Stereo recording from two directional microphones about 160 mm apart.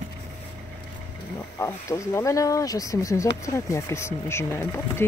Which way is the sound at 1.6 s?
15° left (ahead or behind).